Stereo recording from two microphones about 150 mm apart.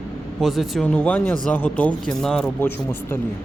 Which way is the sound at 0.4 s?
Centre (ahead or behind).